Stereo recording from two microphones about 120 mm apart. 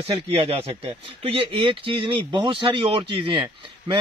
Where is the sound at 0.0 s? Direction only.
50° right (ahead or behind).